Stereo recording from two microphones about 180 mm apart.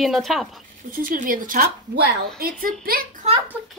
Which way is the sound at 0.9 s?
50° right (ahead or behind).